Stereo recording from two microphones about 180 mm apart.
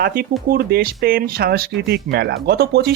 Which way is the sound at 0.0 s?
55° right (ahead or behind).